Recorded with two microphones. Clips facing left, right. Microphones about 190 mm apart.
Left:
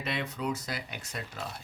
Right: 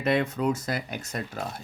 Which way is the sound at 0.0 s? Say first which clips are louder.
Right 9 dB; 50° right (ahead or behind).